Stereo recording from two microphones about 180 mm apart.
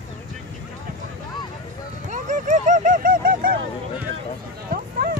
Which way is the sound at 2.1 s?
45° right (ahead or behind).